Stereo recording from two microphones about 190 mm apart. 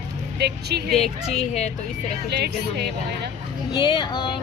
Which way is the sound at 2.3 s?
60° right (ahead or behind).